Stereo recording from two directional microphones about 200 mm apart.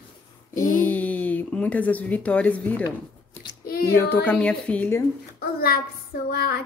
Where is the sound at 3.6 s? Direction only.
50° left (ahead or behind).